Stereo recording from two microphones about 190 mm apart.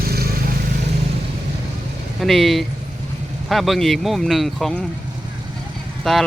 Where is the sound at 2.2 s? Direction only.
Centre (ahead or behind).